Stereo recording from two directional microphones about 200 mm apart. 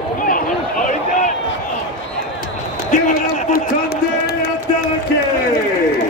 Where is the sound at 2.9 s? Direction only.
45° left (ahead or behind).